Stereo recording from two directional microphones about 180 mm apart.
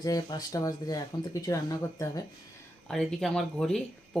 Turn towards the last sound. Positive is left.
turn(degrees=5)  # may be behind; listen again after turning